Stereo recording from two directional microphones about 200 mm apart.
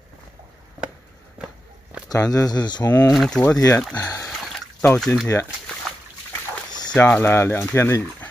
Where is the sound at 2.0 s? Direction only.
20° left (ahead or behind).